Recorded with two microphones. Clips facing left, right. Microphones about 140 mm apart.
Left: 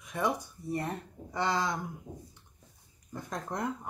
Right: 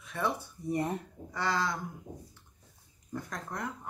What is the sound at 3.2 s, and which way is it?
Speech, 20° left (ahead or behind).